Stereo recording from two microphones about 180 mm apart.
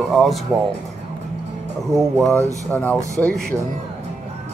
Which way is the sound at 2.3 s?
15° right (ahead or behind).